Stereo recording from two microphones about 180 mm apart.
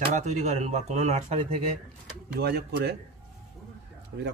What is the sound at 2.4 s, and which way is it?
Speech, 65° right (ahead or behind).